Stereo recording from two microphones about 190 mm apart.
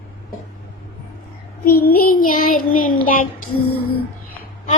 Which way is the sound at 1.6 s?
50° left (ahead or behind).